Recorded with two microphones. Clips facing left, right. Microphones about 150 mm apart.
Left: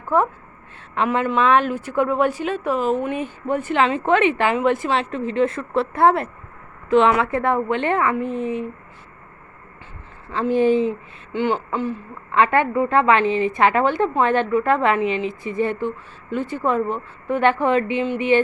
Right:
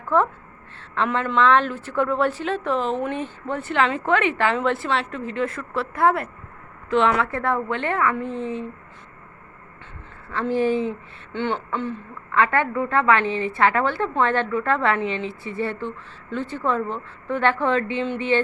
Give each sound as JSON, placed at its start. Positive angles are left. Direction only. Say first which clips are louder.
{"t": 0.1, "sound": "a woman's voice", "louder": "left 1 dB", "side_deg": 10}
{"t": 10.5, "sound": "a woman's voice", "louder": "left 4 dB", "side_deg": 20}
{"t": 12.3, "sound": "a woman's voice", "louder": "left 3 dB", "side_deg": 20}